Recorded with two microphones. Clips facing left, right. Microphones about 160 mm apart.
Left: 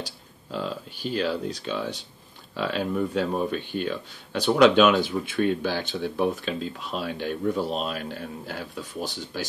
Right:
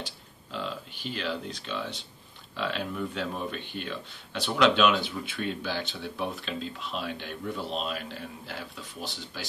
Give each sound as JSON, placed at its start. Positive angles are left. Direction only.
{"t": 0.0, "sound": "speech", "side_deg": 40}